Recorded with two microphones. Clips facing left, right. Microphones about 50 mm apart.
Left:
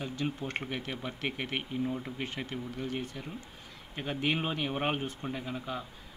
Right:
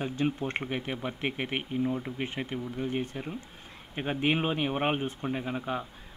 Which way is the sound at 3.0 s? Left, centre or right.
Right.